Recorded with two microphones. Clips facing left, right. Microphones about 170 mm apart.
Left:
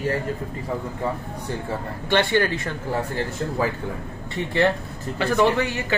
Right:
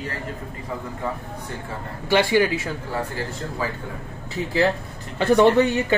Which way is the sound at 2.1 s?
10° right (ahead or behind).